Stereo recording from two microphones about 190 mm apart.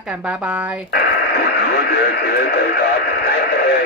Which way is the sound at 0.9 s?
60° left (ahead or behind).